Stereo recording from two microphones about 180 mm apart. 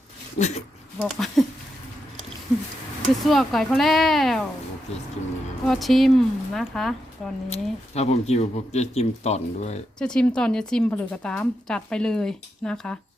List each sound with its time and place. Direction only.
0.3 s speech: 40° left (ahead or behind)
0.9 s speech: centre (ahead or behind)
3.2 s speech: centre (ahead or behind)
5.6 s speech: centre (ahead or behind)
7.5 s speech: 35° left (ahead or behind)
10.0 s speech: 5° left (ahead or behind)